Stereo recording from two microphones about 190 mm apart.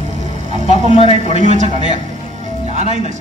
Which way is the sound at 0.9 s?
30° left (ahead or behind).